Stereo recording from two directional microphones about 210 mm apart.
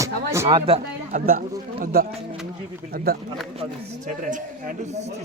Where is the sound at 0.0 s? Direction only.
15° right (ahead or behind).